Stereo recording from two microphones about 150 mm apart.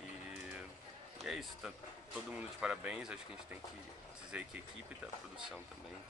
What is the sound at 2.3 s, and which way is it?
Speech, 10° right (ahead or behind).